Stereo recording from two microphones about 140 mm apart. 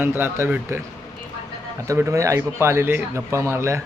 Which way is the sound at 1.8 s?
20° right (ahead or behind).